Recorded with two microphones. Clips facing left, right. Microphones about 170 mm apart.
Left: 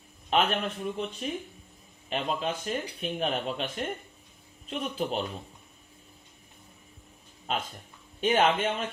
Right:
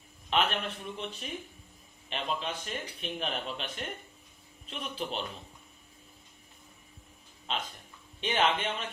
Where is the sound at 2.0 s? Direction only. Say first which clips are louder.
Left 4 dB; 40° left (ahead or behind).